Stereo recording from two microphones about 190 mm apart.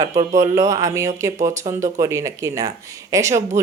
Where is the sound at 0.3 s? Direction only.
15° right (ahead or behind).